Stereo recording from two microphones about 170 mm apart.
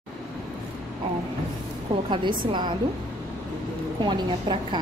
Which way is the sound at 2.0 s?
30° right (ahead or behind).